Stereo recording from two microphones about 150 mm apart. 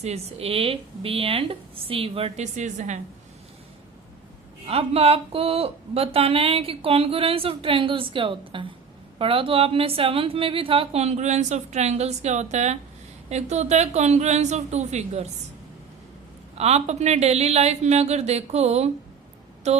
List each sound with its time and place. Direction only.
0.0 s speech: 45° right (ahead or behind)
4.6 s a woman's voice: 40° right (ahead or behind)
16.6 s a woman's voice: 45° right (ahead or behind)